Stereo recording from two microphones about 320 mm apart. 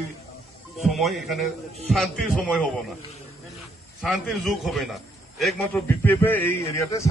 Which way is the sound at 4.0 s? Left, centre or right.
Centre.